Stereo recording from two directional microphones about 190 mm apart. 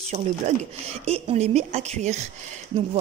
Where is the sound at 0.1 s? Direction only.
40° right (ahead or behind).